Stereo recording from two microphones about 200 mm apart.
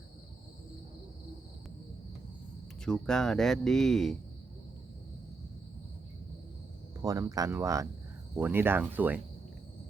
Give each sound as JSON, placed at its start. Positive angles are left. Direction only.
{"t": 2.8, "sound": "speech", "side_deg": 5}
{"t": 7.0, "sound": "speech", "side_deg": -15}